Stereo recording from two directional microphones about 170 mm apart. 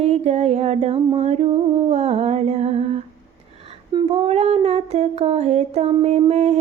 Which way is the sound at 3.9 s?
35° right (ahead or behind).